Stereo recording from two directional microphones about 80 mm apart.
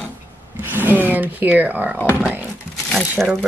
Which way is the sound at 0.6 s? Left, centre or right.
Right.